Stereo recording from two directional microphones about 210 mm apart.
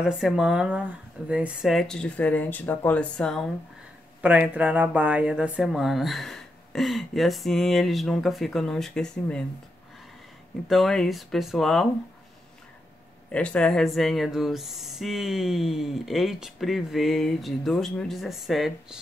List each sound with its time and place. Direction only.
0.0 s speech: centre (ahead or behind)
4.2 s speech: 5° right (ahead or behind)
10.7 s speech: centre (ahead or behind)
13.3 s speech: 5° left (ahead or behind)